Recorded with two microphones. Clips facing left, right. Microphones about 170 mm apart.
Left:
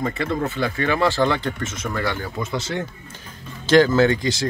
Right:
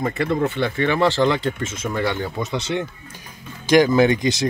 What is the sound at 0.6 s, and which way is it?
Speech, 20° right (ahead or behind).